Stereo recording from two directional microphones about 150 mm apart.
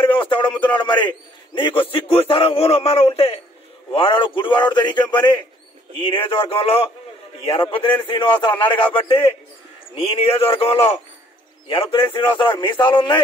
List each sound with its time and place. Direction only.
0.0 s a man's voice: 35° left (ahead or behind)